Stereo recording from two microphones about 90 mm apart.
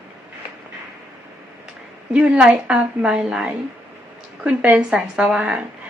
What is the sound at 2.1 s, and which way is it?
A woman's voice, 10° right (ahead or behind).